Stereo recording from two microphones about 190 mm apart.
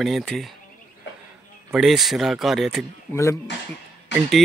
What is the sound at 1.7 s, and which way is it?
Speech, centre (ahead or behind).